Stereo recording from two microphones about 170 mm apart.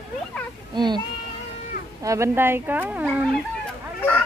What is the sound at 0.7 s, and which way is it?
Speech, 25° right (ahead or behind).